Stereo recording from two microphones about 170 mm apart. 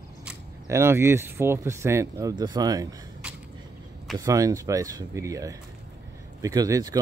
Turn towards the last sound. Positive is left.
turn(degrees=-20)  # may be behind; listen again after turning